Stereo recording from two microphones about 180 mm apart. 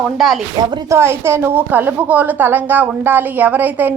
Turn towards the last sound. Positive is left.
turn(degrees=-10)  # may be behind; listen again after turning